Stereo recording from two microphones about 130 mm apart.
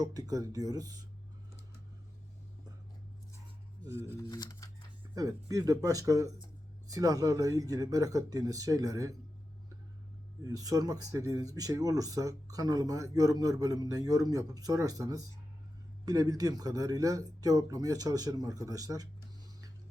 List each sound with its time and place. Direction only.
0.0 s speech: 30° right (ahead or behind)
3.8 s speech: 20° right (ahead or behind)
4.1 s speech: 25° left (ahead or behind)
5.1 s speech: 25° right (ahead or behind)
10.4 s speech: 25° right (ahead or behind)